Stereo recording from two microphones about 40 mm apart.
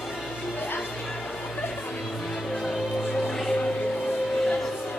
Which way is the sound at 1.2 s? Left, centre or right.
Left.